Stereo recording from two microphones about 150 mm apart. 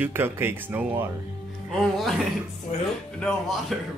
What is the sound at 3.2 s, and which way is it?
Speech, centre (ahead or behind).